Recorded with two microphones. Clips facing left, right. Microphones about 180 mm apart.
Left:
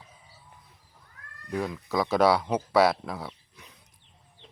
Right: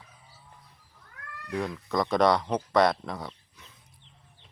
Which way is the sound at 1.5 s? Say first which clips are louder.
Even; 5° left (ahead or behind).